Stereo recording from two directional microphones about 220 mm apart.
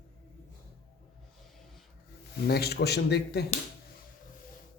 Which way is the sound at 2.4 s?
45° left (ahead or behind).